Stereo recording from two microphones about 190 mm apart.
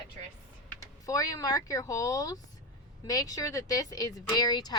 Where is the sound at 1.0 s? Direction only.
20° left (ahead or behind).